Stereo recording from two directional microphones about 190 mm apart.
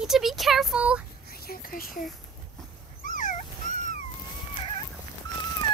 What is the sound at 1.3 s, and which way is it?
Speech, 50° left (ahead or behind).